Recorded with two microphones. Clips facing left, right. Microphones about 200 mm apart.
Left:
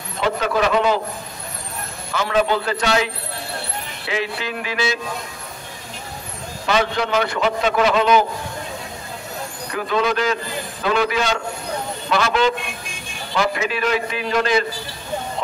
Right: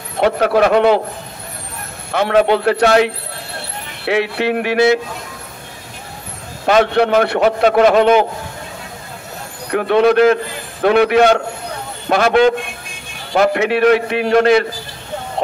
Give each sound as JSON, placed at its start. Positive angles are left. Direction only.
{"t": 0.2, "sound": "a man's voice", "side_deg": -60}
{"t": 2.1, "sound": "a man's voice", "side_deg": -60}
{"t": 6.6, "sound": "a man's voice", "side_deg": -60}
{"t": 9.7, "sound": "a man's voice", "side_deg": -60}